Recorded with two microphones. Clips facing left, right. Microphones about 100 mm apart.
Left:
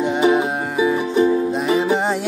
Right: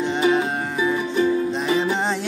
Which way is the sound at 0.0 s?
10° left (ahead or behind).